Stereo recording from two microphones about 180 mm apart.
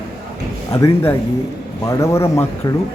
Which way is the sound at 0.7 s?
15° left (ahead or behind).